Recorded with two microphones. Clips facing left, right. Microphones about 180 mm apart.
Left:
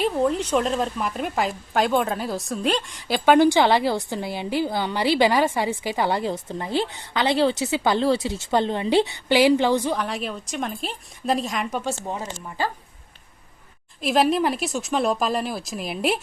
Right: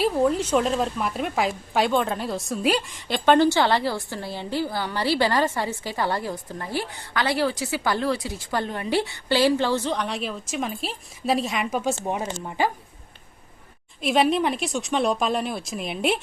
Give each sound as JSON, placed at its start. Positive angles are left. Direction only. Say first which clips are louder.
{"t": 0.0, "sound": "speech", "louder": "right 1 dB", "side_deg": 0}
{"t": 9.9, "sound": "a woman's voice", "louder": "left 1 dB", "side_deg": 0}
{"t": 12.0, "sound": "speech", "louder": "right 3 dB", "side_deg": -20}
{"t": 14.0, "sound": "a woman's voice", "louder": "left 1 dB", "side_deg": 0}